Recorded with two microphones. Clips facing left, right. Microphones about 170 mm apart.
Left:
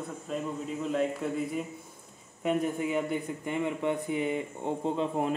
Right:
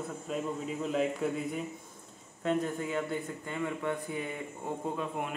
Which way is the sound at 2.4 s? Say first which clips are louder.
Left 2 dB; 15° left (ahead or behind).